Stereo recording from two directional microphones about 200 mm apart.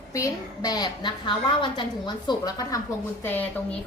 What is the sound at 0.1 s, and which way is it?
A woman's voice, 15° left (ahead or behind).